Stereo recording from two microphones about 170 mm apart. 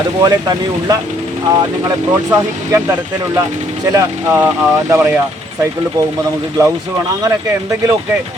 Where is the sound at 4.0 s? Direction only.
15° right (ahead or behind).